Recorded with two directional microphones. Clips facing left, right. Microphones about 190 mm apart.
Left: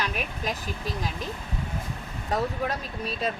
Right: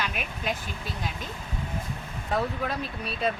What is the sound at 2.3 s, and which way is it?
Speech, 40° left (ahead or behind).